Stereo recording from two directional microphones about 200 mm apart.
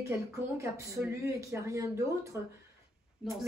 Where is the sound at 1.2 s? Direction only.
15° right (ahead or behind).